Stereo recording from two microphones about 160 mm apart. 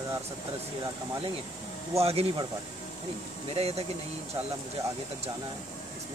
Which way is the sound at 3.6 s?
40° right (ahead or behind).